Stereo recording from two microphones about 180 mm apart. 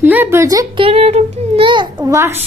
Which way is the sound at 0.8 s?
35° right (ahead or behind).